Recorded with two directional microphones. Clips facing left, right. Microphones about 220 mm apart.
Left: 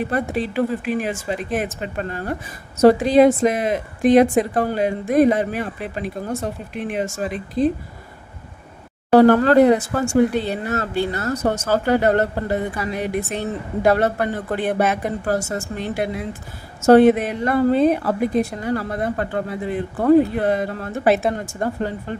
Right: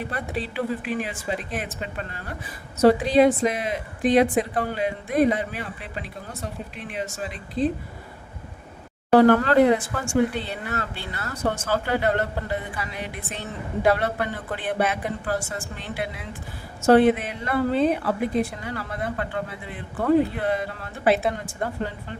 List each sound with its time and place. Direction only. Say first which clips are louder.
0.1 s a woman's voice: left 8 dB; 45° left (ahead or behind)
9.1 s a woman's voice: left 4 dB; 40° left (ahead or behind)